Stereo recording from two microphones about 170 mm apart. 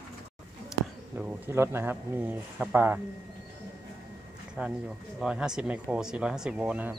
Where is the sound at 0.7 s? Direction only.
10° right (ahead or behind).